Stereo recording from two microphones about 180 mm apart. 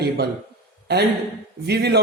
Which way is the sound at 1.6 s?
65° right (ahead or behind).